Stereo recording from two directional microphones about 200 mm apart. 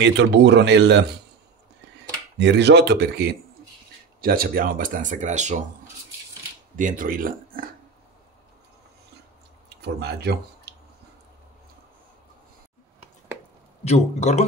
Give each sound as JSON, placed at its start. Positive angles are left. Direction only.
{"t": 0.0, "sound": "speech", "side_deg": -60}
{"t": 2.3, "sound": "speech", "side_deg": -60}
{"t": 6.8, "sound": "speech", "side_deg": -40}
{"t": 9.8, "sound": "speech", "side_deg": -55}
{"t": 13.8, "sound": "a man's voice", "side_deg": 35}